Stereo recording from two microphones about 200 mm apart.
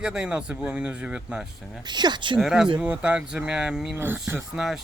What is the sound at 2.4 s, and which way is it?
Speech, 5° right (ahead or behind).